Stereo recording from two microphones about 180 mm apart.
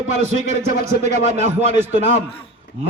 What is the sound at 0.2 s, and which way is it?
A man's voice, 40° right (ahead or behind).